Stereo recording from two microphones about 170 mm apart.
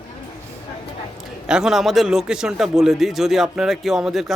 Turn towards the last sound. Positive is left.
turn(degrees=0)  # may be behind; listen again after turning